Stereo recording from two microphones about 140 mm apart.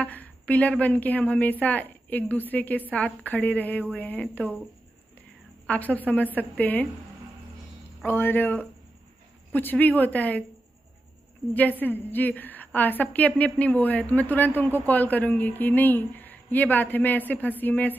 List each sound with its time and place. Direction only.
0.0 s a woman's voice: 10° left (ahead or behind)
5.7 s a woman's voice: 10° left (ahead or behind)
8.0 s a woman's voice: 15° left (ahead or behind)
11.5 s a woman's voice: 10° left (ahead or behind)